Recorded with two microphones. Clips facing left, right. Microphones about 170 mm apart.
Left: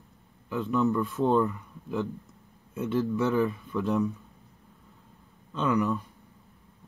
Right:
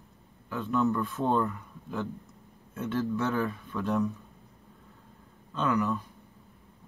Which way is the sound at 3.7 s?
Centre (ahead or behind).